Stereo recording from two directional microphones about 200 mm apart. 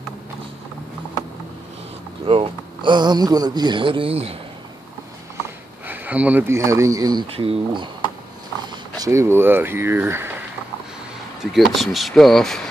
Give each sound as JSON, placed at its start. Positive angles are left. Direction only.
{"t": 2.2, "sound": "speech", "side_deg": -30}
{"t": 5.9, "sound": "speech", "side_deg": -10}
{"t": 11.5, "sound": "speech", "side_deg": 0}